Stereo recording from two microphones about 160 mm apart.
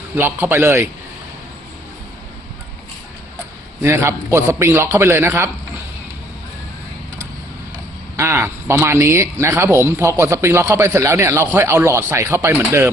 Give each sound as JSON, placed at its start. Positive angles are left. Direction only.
{"t": 0.2, "sound": "speech", "side_deg": -15}
{"t": 3.8, "sound": "speech", "side_deg": -15}
{"t": 8.1, "sound": "speech", "side_deg": -15}